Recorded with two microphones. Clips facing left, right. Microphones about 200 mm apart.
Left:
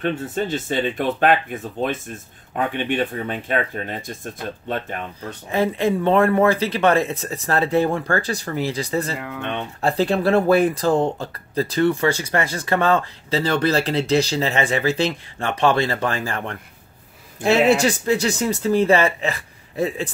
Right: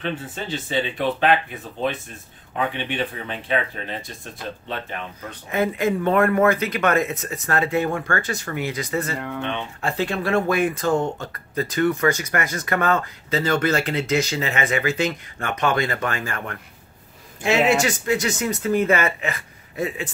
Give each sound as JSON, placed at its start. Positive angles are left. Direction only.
{"t": 0.0, "sound": "speech", "side_deg": 50}
{"t": 2.5, "sound": "speech", "side_deg": 50}
{"t": 5.2, "sound": "speech", "side_deg": 30}
{"t": 9.1, "sound": "speech", "side_deg": 5}
{"t": 9.8, "sound": "speech", "side_deg": 35}